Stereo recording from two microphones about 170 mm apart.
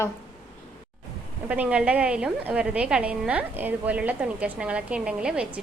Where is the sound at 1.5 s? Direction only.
5° right (ahead or behind).